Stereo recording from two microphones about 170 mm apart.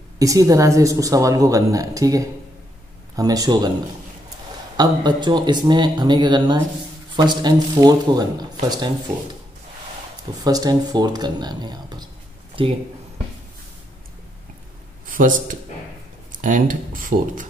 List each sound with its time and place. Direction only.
0.2 s a woman's voice: 20° right (ahead or behind)
4.7 s a woman's voice: 25° right (ahead or behind)
10.4 s a woman's voice: 20° right (ahead or behind)
15.0 s a man's voice: 55° right (ahead or behind)